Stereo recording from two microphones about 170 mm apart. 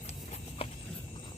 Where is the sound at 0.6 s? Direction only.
35° left (ahead or behind).